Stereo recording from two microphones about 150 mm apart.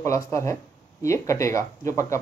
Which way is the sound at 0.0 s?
20° left (ahead or behind).